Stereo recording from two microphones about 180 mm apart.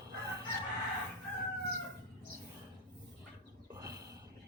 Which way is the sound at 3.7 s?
20° right (ahead or behind).